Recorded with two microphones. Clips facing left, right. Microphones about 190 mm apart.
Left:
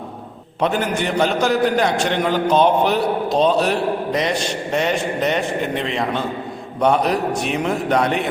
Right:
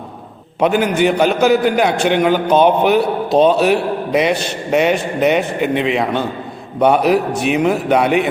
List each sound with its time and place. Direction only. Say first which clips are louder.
0.9 s a man's voice: right 5 dB; 5° right (ahead or behind)